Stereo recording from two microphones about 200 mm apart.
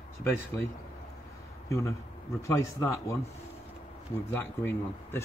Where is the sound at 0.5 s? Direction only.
10° left (ahead or behind).